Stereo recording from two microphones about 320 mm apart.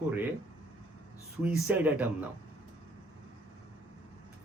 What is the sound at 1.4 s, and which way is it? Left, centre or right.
Speech, centre.